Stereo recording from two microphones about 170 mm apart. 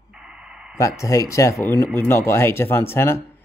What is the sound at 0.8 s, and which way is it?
Speech, 20° left (ahead or behind).